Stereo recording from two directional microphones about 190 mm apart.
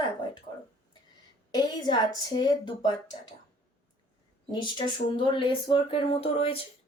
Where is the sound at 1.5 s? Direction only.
20° left (ahead or behind).